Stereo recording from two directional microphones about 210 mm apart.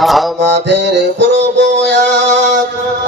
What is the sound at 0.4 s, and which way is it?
Music, 55° right (ahead or behind).